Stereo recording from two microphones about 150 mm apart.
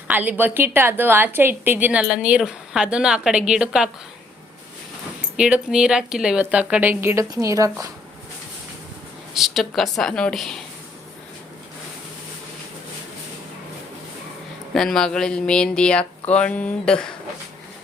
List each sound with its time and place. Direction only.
0.1 s a woman's voice: 10° right (ahead or behind)
5.4 s a woman's voice: 5° right (ahead or behind); by 7.9 s 20° right (ahead or behind)
9.3 s speech: centre (ahead or behind)
14.7 s speech: 5° left (ahead or behind)